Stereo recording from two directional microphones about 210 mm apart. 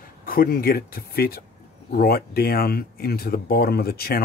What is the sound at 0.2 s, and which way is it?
Speech, 45° left (ahead or behind).